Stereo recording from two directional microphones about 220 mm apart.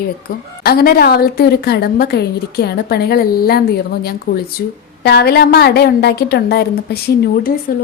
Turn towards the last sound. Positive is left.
turn(degrees=45)  # may be behind; listen again after turning